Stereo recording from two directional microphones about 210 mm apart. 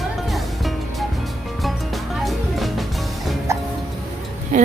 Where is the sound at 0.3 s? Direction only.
Centre (ahead or behind).